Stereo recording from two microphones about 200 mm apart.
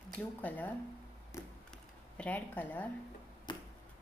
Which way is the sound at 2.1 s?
5° left (ahead or behind).